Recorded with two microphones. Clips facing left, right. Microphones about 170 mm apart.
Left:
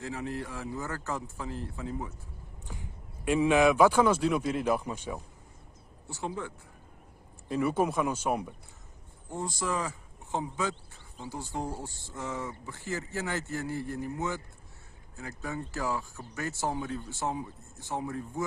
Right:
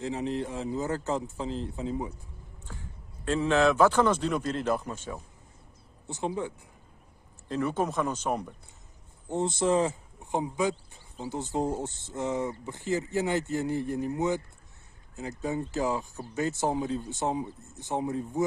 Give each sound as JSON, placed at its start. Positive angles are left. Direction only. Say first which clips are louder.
{"t": 0.0, "sound": "speech", "louder": "right 5 dB", "side_deg": -20}
{"t": 2.7, "sound": "speech", "louder": "left 1 dB", "side_deg": 15}
{"t": 6.0, "sound": "speech", "louder": "right 4 dB", "side_deg": -20}
{"t": 7.4, "sound": "speech", "louder": "left 1 dB", "side_deg": 10}
{"t": 9.3, "sound": "speech", "louder": "right 7 dB", "side_deg": -25}
{"t": 10.3, "sound": "speech", "louder": "right 4 dB", "side_deg": -15}